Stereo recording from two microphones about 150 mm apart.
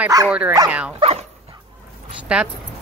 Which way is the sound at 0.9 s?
40° right (ahead or behind).